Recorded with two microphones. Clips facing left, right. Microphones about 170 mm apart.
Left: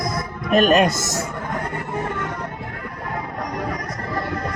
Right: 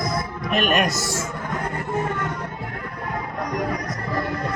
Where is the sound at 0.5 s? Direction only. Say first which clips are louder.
Left 6 dB; 35° left (ahead or behind).